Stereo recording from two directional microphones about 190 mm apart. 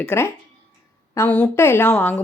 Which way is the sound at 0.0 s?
15° left (ahead or behind).